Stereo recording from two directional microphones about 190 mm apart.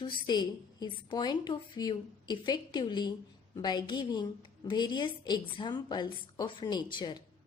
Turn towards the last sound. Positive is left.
turn(degrees=25)  # may be behind; listen again after turning